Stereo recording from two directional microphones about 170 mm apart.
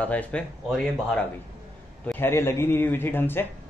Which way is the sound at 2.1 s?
15° left (ahead or behind).